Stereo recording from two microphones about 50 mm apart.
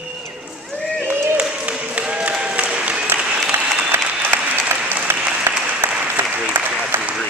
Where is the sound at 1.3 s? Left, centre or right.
Right.